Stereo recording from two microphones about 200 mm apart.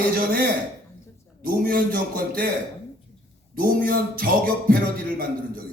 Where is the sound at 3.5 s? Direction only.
45° right (ahead or behind).